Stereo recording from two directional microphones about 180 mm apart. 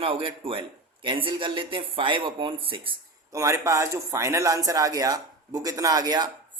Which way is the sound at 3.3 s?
15° right (ahead or behind).